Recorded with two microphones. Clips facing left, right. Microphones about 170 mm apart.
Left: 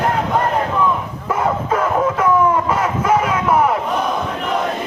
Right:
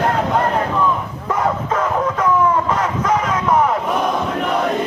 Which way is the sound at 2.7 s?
10° left (ahead or behind).